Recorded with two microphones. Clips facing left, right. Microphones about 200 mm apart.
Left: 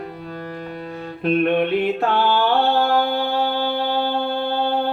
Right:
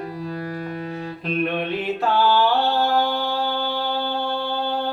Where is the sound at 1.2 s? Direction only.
55° left (ahead or behind).